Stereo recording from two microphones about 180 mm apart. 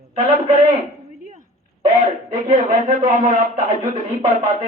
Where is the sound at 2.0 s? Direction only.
35° right (ahead or behind).